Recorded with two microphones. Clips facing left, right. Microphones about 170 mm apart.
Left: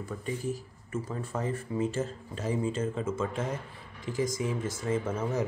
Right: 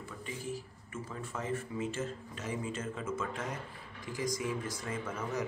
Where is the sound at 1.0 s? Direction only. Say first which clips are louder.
Left 4 dB; 35° left (ahead or behind).